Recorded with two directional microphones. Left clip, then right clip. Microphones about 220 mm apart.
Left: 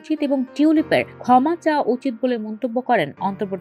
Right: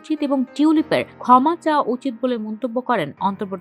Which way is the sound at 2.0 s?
50° right (ahead or behind).